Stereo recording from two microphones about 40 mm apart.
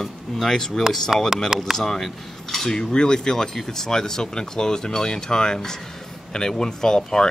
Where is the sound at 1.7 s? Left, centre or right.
Centre.